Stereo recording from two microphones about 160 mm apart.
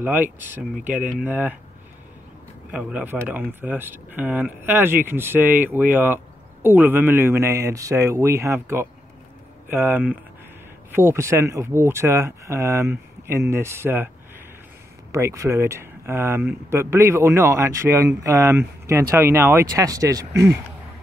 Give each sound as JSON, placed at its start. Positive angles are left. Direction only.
{"t": 0.0, "sound": "speech", "side_deg": -10}
{"t": 2.7, "sound": "speech", "side_deg": -10}
{"t": 15.1, "sound": "speech", "side_deg": -20}